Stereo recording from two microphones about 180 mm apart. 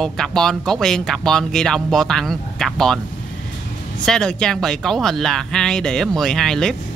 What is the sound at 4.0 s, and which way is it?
Speech, 5° left (ahead or behind).